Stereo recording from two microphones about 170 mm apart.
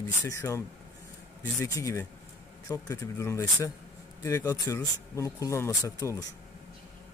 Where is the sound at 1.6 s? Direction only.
20° left (ahead or behind).